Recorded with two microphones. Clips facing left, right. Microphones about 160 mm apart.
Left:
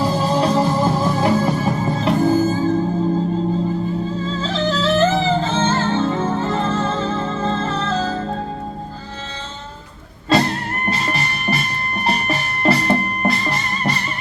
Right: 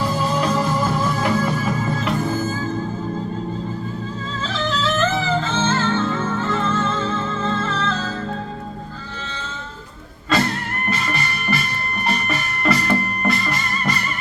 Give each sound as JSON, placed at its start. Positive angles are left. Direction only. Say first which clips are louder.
{"t": 0.0, "sound": "music", "louder": "left 3 dB", "side_deg": 30}
{"t": 4.5, "sound": "music", "louder": "left 4 dB", "side_deg": 35}
{"t": 10.2, "sound": "music", "louder": "left 3 dB", "side_deg": 30}